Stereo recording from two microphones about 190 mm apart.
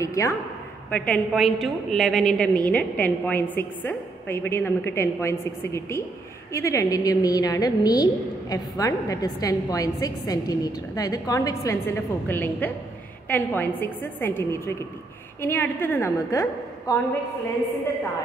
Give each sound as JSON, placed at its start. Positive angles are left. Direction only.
{"t": 0.0, "sound": "a woman's voice", "side_deg": 15}